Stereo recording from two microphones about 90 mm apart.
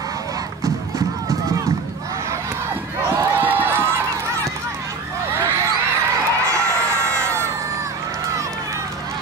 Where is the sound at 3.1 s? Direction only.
25° right (ahead or behind).